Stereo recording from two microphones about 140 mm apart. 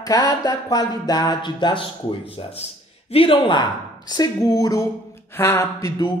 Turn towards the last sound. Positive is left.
turn(degrees=20)  # may be behind; listen again after turning